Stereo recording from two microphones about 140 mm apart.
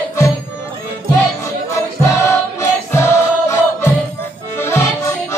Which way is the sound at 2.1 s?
20° left (ahead or behind).